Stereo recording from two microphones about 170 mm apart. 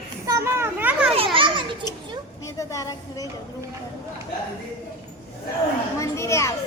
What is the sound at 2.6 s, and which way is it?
Speech, 20° left (ahead or behind).